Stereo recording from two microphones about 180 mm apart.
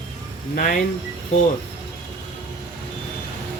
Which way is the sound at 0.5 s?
50° left (ahead or behind).